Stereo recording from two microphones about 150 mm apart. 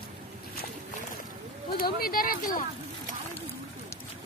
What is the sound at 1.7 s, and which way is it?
Speech, 80° left.